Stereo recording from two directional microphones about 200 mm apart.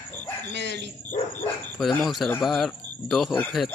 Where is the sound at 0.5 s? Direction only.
60° right (ahead or behind).